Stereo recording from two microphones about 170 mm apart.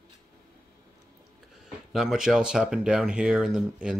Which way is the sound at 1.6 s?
Centre (ahead or behind).